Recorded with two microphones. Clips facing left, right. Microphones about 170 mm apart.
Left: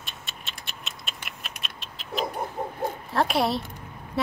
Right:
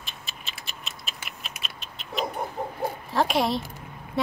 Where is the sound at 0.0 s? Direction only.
Centre (ahead or behind).